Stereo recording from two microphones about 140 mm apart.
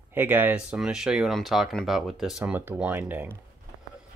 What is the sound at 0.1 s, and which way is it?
Speech, 15° right (ahead or behind).